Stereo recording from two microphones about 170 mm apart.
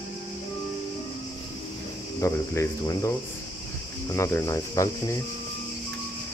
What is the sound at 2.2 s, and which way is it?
Speech, 15° left (ahead or behind).